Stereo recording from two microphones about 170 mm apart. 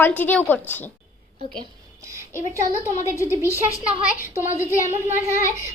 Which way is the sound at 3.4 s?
15° left (ahead or behind).